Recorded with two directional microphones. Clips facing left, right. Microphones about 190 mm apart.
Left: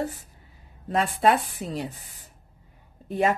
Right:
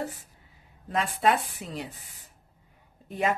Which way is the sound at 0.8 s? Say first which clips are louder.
Left 3 dB; 35° left (ahead or behind).